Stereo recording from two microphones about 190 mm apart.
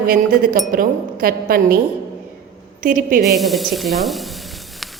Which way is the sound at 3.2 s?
Centre (ahead or behind).